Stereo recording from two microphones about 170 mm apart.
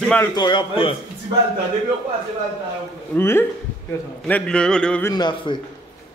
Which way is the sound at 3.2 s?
15° left (ahead or behind).